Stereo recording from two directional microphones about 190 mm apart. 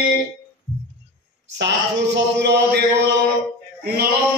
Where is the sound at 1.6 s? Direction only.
65° right (ahead or behind).